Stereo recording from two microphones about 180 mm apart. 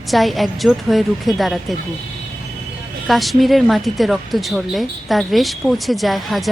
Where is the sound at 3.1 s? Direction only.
Centre (ahead or behind).